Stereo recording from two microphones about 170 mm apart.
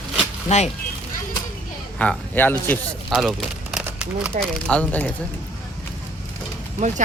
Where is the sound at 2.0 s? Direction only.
10° left (ahead or behind).